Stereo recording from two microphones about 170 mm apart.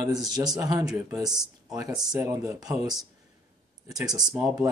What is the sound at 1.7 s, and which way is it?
Speech, 20° right (ahead or behind).